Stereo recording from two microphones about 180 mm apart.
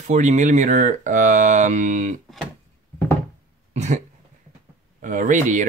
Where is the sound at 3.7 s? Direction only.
40° right (ahead or behind).